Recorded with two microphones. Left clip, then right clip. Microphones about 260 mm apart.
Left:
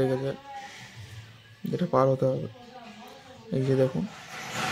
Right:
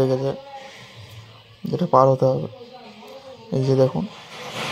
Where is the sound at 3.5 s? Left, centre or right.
Centre.